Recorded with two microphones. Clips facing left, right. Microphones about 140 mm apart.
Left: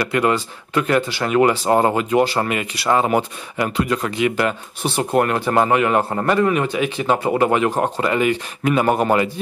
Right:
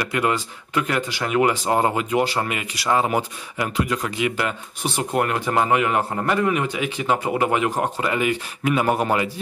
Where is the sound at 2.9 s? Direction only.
45° left (ahead or behind).